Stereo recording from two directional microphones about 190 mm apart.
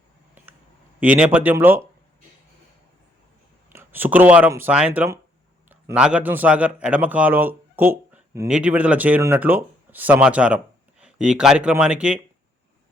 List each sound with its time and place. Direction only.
0.9 s a man's voice: 5° right (ahead or behind)
3.7 s a man's voice: 10° right (ahead or behind)